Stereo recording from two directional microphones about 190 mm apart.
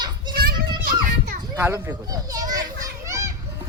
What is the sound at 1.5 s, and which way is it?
Children playing, 10° right (ahead or behind).